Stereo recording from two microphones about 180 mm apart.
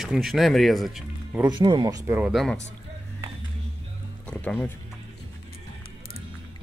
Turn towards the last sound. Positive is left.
turn(degrees=10)  # may be behind; listen again after turning